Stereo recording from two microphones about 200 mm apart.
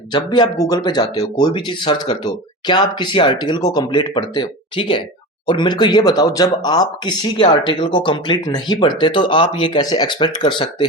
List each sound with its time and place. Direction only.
0.1 s speech: 25° left (ahead or behind)